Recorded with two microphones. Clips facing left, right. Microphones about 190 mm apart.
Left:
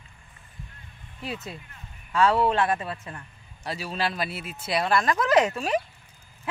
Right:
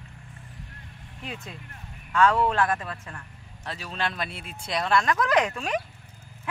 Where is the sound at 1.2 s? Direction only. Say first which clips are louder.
Left 4 dB; 35° left (ahead or behind).